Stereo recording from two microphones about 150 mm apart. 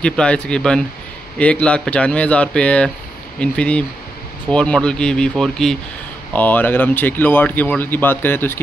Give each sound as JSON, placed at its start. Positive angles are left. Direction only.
{"t": 0.0, "sound": "speech", "side_deg": 5}